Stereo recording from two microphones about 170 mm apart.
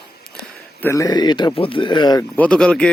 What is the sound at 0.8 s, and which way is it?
Speech, 20° left (ahead or behind).